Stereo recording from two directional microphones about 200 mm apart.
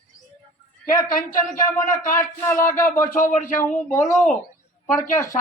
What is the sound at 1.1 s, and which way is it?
Speech, 45° left (ahead or behind).